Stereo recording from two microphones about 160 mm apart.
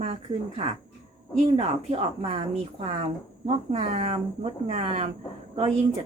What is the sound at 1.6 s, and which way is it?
A woman's voice, 40° right (ahead or behind).